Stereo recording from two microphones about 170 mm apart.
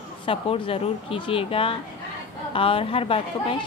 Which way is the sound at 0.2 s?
30° left (ahead or behind).